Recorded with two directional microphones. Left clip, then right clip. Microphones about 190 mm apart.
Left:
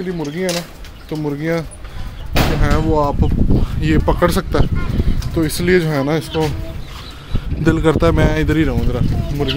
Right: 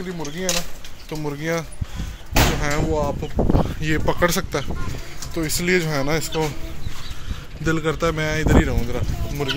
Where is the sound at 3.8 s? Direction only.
20° left (ahead or behind).